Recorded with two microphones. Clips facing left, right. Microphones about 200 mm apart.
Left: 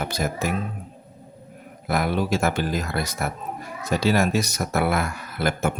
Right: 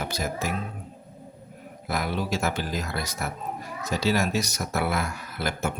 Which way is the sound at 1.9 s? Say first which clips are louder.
Left 5 dB; 55° left (ahead or behind).